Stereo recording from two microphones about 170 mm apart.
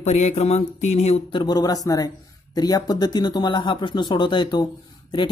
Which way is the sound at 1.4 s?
20° left (ahead or behind).